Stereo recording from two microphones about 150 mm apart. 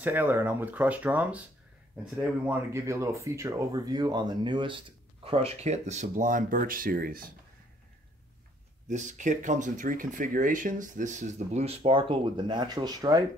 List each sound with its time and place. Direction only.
0.0 s speech: 10° right (ahead or behind); by 7.3 s 75° right (ahead or behind)
8.8 s speech: 55° right (ahead or behind); by 13.2 s 25° right (ahead or behind)